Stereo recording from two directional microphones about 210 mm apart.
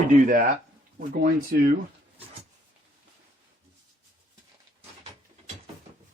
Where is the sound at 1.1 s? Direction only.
40° right (ahead or behind).